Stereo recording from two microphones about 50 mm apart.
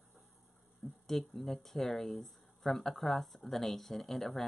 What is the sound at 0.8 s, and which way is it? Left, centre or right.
Speech, left.